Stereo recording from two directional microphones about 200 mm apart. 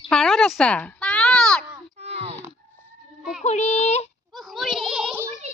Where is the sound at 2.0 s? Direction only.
30° right (ahead or behind).